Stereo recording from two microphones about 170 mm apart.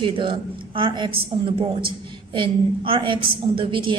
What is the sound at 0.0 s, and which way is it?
A woman's voice, 30° right (ahead or behind).